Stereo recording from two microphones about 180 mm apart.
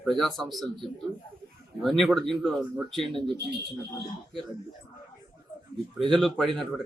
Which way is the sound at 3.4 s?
65° right (ahead or behind).